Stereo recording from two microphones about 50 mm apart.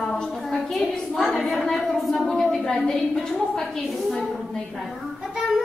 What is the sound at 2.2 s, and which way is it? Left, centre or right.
A woman's voice, centre.